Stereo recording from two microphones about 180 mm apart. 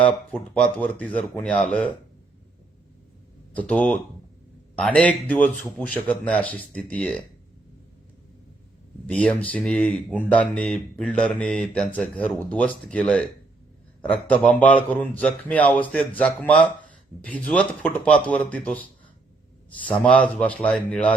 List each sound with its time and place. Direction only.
0.0 s speech: 10° left (ahead or behind)
3.5 s speech: 5° left (ahead or behind)
9.0 s speech: 5° left (ahead or behind)
19.9 s speech: 5° left (ahead or behind)